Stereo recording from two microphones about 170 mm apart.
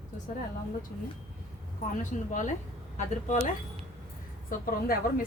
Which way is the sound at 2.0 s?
50° left (ahead or behind).